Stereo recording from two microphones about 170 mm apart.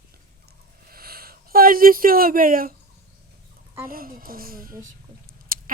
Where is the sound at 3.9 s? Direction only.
60° right (ahead or behind).